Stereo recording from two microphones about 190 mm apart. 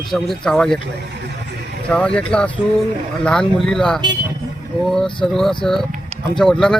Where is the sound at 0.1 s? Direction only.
Centre (ahead or behind).